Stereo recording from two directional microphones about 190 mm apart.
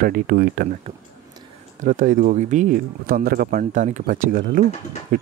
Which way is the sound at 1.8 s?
45° right (ahead or behind).